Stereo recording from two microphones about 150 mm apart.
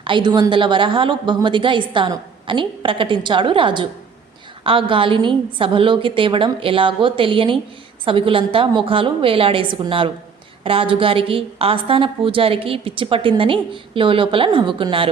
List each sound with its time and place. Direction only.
0.0 s a woman's voice: 30° right (ahead or behind)